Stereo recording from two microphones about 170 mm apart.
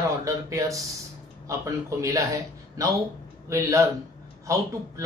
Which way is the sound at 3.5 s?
20° right (ahead or behind).